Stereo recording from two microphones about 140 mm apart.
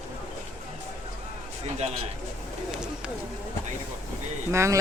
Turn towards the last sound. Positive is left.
turn(degrees=-20)  # may be behind; listen again after turning